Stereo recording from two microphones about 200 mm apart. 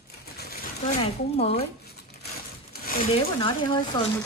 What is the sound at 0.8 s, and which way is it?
Speech, 30° left (ahead or behind).